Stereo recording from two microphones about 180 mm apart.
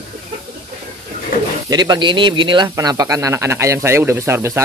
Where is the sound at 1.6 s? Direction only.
20° right (ahead or behind).